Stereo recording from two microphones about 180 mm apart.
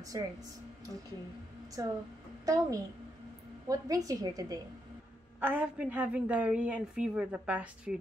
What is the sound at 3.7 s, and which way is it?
A woman's voice, 20° right (ahead or behind).